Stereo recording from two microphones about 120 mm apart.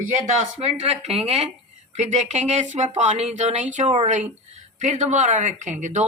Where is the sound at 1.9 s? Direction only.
75° right (ahead or behind).